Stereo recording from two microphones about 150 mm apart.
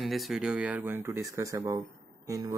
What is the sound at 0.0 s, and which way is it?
Speech, centre (ahead or behind).